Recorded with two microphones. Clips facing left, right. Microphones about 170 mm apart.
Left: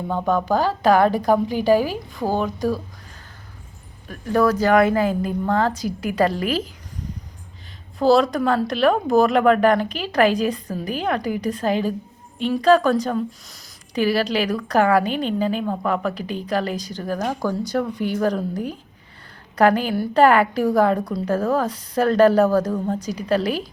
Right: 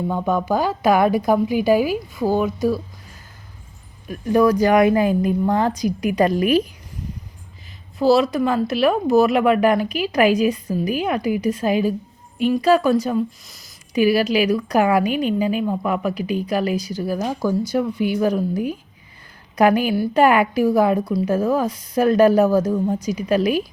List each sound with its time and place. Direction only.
0.1 s a woman's voice: 10° right (ahead or behind)
4.1 s a woman's voice: 15° right (ahead or behind)
7.9 s a woman's voice: 5° right (ahead or behind)